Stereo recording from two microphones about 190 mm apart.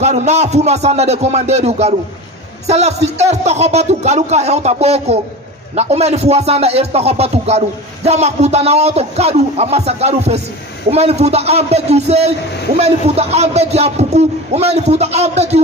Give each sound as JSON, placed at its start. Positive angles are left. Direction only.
{"t": 0.0, "sound": "speech", "side_deg": -35}